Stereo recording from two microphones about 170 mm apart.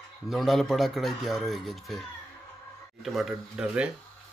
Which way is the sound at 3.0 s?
Centre (ahead or behind).